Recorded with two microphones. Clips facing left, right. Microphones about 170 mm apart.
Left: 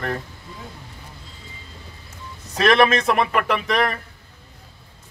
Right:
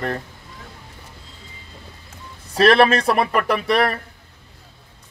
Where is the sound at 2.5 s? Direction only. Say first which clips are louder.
Right 2 dB; 30° right (ahead or behind).